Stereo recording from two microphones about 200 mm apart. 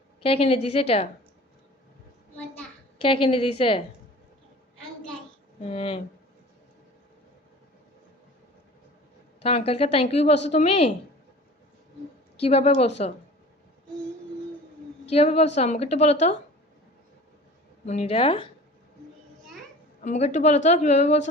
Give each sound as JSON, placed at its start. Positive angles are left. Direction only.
{"t": 0.2, "sound": "a woman's voice", "side_deg": 30}
{"t": 3.0, "sound": "a woman's voice", "side_deg": 25}
{"t": 5.6, "sound": "a woman's voice", "side_deg": 30}
{"t": 9.4, "sound": "a woman's voice", "side_deg": 30}
{"t": 12.4, "sound": "a woman's voice", "side_deg": 30}
{"t": 15.1, "sound": "a woman's voice", "side_deg": 30}
{"t": 17.8, "sound": "a woman's voice", "side_deg": 30}
{"t": 20.0, "sound": "a woman's voice", "side_deg": 35}